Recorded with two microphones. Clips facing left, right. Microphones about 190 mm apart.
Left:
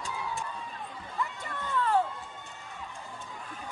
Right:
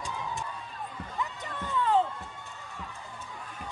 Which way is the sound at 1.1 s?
15° right (ahead or behind).